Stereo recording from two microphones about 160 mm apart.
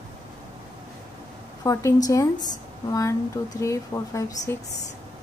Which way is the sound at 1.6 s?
20° left (ahead or behind).